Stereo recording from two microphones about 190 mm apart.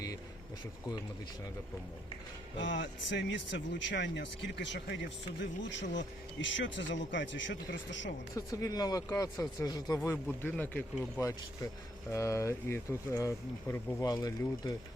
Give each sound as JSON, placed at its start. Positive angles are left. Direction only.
{"t": 2.6, "sound": "speech", "side_deg": 75}
{"t": 8.4, "sound": "speech", "side_deg": 20}